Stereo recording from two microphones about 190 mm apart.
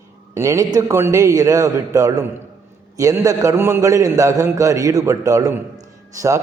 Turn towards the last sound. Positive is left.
turn(degrees=-15)  # may be behind; listen again after turning